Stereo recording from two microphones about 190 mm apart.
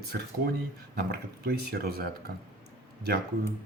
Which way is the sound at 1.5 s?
55° right (ahead or behind).